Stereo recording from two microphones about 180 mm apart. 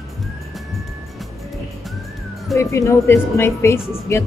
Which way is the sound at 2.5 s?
15° left (ahead or behind).